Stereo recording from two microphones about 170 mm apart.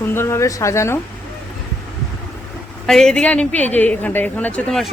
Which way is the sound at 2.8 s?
5° left (ahead or behind).